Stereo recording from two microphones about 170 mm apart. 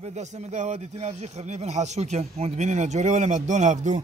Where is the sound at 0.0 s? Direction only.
40° right (ahead or behind).